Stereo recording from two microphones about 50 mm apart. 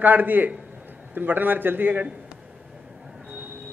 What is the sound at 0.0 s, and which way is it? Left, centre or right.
A man's voice, right.